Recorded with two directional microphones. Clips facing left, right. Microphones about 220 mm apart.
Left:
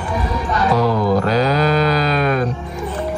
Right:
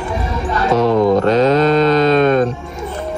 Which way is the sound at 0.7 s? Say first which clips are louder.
Right 5 dB; 25° right (ahead or behind).